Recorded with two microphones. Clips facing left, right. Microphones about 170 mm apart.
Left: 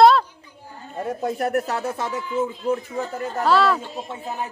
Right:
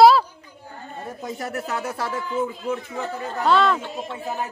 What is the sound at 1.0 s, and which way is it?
Speech, 60° left (ahead or behind).